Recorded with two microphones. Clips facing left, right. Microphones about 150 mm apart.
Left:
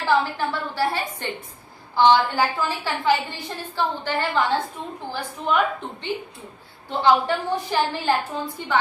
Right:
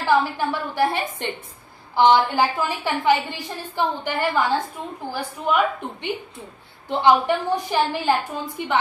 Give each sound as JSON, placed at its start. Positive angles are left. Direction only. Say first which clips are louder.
{"t": 0.0, "sound": "a woman's voice", "louder": "right 1 dB", "side_deg": -15}